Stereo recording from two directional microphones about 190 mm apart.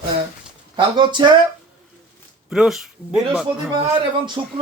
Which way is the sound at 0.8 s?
25° right (ahead or behind).